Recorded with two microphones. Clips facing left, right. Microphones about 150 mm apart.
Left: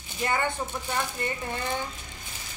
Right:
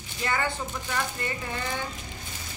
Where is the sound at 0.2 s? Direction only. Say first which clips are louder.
Left 1 dB; 20° left (ahead or behind).